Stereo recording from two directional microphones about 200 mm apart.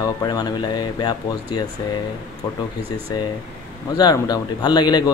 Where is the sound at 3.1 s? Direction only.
20° left (ahead or behind).